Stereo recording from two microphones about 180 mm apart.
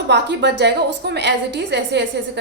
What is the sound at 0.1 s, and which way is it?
A woman's voice, 70° right (ahead or behind).